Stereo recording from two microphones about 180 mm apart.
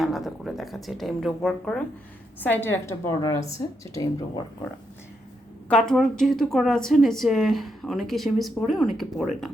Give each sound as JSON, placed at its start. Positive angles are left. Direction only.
{"t": 0.0, "sound": "a woman's voice", "side_deg": 0}
{"t": 5.6, "sound": "speech", "side_deg": 5}